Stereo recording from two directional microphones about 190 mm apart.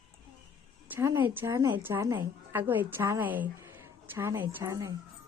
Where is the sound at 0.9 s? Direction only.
10° right (ahead or behind).